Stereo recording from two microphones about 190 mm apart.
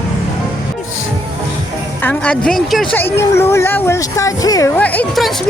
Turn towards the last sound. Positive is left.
turn(degrees=5)  # may be behind; listen again after turning